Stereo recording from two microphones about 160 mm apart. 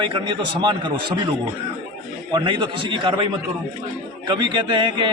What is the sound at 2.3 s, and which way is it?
A man's voice, 30° right (ahead or behind).